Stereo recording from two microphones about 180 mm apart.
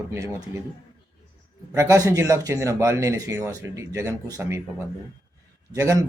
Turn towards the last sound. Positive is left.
turn(degrees=-20)  # may be behind; listen again after turning